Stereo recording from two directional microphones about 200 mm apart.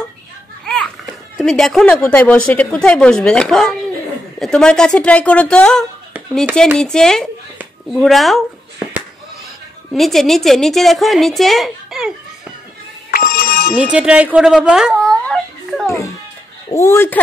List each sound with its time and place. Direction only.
0.7 s a child's voice: 5° left (ahead or behind)
6.1 s dishes: 10° right (ahead or behind)
6.8 s a woman's voice: 5° left (ahead or behind)
7.5 s a sound: centre (ahead or behind)
9.9 s a woman's voice: centre (ahead or behind)
13.1 s ringtone: 45° left (ahead or behind)
13.9 s a sound: 5° right (ahead or behind)
16.7 s speech: 15° left (ahead or behind)